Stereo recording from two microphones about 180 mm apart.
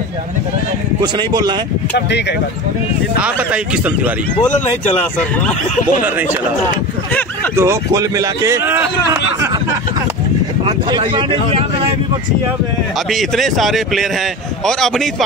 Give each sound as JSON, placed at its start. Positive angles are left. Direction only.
{"t": 1.0, "sound": "speech", "side_deg": -25}
{"t": 2.0, "sound": "speech", "side_deg": 70}
{"t": 3.2, "sound": "a man's voice", "side_deg": -5}
{"t": 7.5, "sound": "a man's voice", "side_deg": -15}
{"t": 10.6, "sound": "speech", "side_deg": -25}
{"t": 13.1, "sound": "speech", "side_deg": 0}